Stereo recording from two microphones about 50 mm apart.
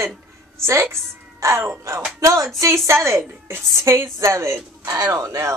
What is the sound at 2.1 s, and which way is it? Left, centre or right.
Speech, right.